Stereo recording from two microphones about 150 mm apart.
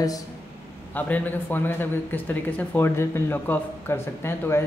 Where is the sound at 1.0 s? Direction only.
10° left (ahead or behind).